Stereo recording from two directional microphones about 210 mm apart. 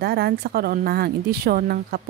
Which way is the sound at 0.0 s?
50° right (ahead or behind).